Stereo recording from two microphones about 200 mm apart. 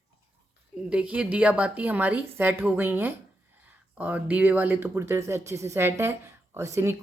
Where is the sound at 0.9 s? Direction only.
5° right (ahead or behind).